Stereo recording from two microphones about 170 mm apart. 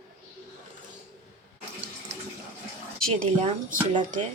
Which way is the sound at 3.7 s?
50° right (ahead or behind).